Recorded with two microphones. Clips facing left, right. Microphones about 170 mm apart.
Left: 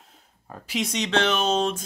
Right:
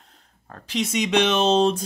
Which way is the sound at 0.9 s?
10° right (ahead or behind).